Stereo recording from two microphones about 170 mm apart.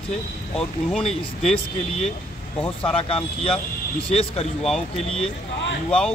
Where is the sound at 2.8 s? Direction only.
35° left (ahead or behind).